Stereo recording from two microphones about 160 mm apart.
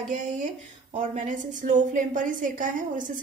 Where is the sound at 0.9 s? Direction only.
50° right (ahead or behind).